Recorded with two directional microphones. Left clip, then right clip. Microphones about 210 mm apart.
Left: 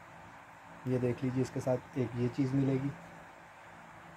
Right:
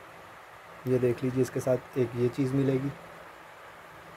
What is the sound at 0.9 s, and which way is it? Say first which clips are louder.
Speech: right 7 dB; 30° right (ahead or behind).